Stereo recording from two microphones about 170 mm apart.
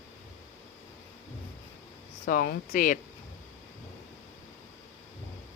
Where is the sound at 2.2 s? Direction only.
60° left (ahead or behind).